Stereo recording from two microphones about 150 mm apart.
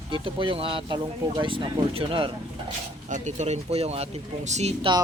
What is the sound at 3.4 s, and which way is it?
Speech, 45° right (ahead or behind).